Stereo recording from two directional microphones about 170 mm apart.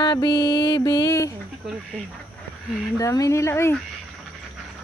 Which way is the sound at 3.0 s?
20° left (ahead or behind).